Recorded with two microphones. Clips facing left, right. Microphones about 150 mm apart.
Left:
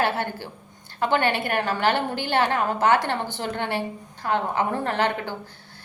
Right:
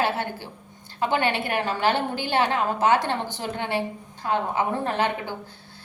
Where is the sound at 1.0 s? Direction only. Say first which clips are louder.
Left 1 dB; 55° left (ahead or behind).